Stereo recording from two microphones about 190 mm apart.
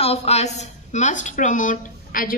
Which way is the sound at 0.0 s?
35° left (ahead or behind).